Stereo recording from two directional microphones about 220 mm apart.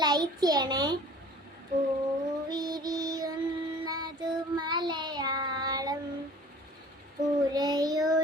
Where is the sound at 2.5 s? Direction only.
20° right (ahead or behind).